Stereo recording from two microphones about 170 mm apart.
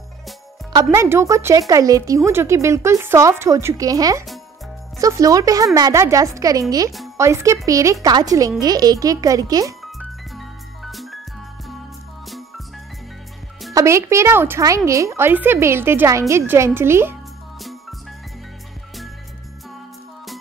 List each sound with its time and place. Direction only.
0.9 s speech: 15° right (ahead or behind)
9.8 s music: centre (ahead or behind)
12.3 s music: centre (ahead or behind)
13.7 s speech: 15° right (ahead or behind)